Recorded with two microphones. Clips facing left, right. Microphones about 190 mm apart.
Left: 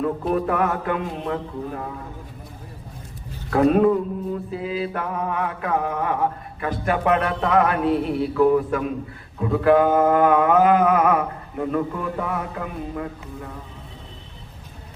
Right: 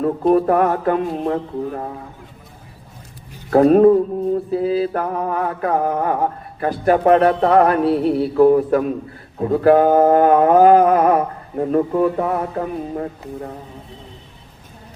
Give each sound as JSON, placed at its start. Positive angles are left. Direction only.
{"t": 0.0, "sound": "mantra", "side_deg": -40}
{"t": 3.5, "sound": "mantra", "side_deg": -40}